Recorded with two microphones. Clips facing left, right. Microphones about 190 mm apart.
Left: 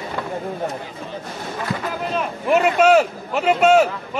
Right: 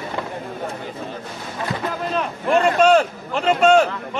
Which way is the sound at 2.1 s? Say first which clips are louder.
Left 1 dB; 5° left (ahead or behind).